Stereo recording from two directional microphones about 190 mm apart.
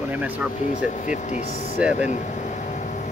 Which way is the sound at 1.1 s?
40° left (ahead or behind).